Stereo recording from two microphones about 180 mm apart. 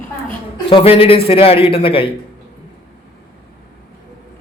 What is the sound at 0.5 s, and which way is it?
A man's voice, 30° left (ahead or behind).